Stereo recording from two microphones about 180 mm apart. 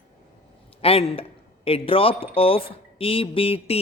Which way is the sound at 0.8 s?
35° left (ahead or behind).